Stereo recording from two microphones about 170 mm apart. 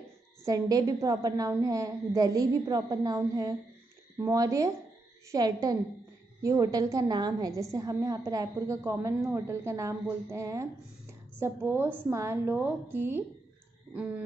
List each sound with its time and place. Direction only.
0.5 s a woman's voice: 20° right (ahead or behind)